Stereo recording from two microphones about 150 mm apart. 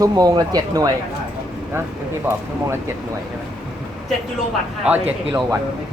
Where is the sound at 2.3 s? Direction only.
15° right (ahead or behind).